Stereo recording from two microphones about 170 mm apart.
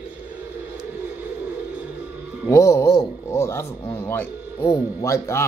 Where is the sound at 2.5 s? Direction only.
20° left (ahead or behind).